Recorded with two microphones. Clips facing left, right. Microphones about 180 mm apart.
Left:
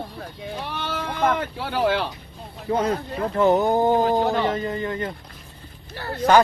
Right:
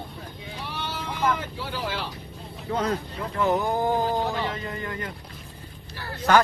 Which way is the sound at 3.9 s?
60° left (ahead or behind).